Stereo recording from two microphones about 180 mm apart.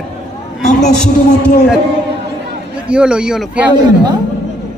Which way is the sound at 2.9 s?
5° right (ahead or behind).